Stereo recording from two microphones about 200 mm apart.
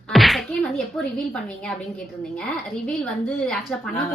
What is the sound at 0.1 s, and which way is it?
Speech, centre (ahead or behind).